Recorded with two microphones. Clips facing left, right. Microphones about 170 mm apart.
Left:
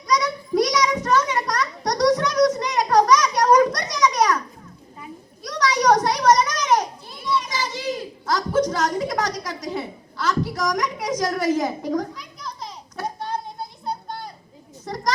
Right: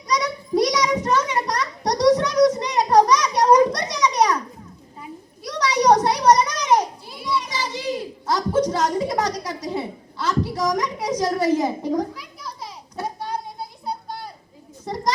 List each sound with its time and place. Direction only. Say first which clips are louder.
0.1 s a sound: even; 30° right (ahead or behind)
5.5 s children playing: right 1 dB; 30° right (ahead or behind)
7.1 s children playing: left 4 dB; 10° right (ahead or behind)
8.3 s a sound: right 1 dB; 30° right (ahead or behind)
12.1 s children playing: even; 10° right (ahead or behind)
14.8 s children playing: right 1 dB; 25° right (ahead or behind)